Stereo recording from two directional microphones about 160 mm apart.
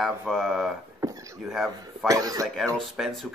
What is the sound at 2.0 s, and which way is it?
Speech, 20° right (ahead or behind).